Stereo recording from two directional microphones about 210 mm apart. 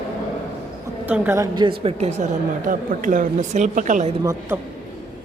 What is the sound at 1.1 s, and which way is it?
A woman's voice, 10° right (ahead or behind).